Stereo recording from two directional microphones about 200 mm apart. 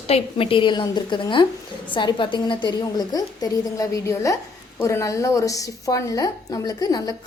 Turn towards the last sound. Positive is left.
turn(degrees=20)  # may be behind; listen again after turning